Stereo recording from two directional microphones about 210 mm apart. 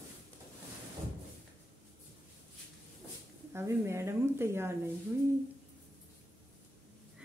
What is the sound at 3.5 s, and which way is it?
Speech, 10° right (ahead or behind).